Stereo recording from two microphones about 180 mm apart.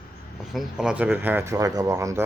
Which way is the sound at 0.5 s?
Centre (ahead or behind).